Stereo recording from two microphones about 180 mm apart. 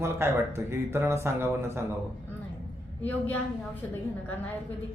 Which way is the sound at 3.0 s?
10° left (ahead or behind).